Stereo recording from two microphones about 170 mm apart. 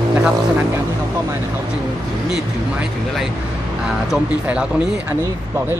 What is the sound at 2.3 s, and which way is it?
Speech, centre (ahead or behind).